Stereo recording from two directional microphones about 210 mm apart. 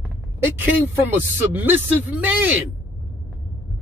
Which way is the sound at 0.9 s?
10° right (ahead or behind).